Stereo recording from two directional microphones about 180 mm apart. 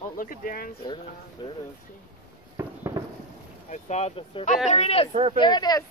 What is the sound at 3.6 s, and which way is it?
Speech, 40° left (ahead or behind).